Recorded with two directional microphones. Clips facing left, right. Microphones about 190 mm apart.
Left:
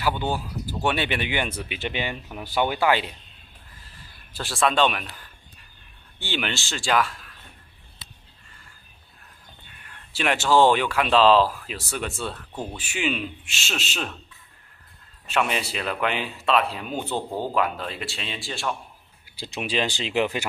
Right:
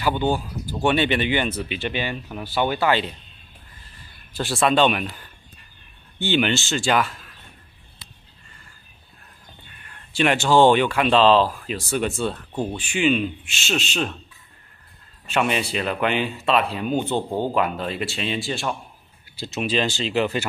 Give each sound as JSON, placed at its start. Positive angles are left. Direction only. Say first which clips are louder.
{"t": 0.2, "sound": "a man's voice", "louder": "right 5 dB", "side_deg": 5}
{"t": 4.3, "sound": "a man's voice", "louder": "right 3 dB", "side_deg": 0}
{"t": 10.1, "sound": "a man's voice", "louder": "right 3 dB", "side_deg": 0}
{"t": 15.2, "sound": "a man's voice", "louder": "right 3 dB", "side_deg": 0}
{"t": 17.1, "sound": "speech", "louder": "right 4 dB", "side_deg": -25}
{"t": 17.6, "sound": "a man's voice", "louder": "right 3 dB", "side_deg": 0}
{"t": 19.3, "sound": "speech", "louder": "right 4 dB", "side_deg": 15}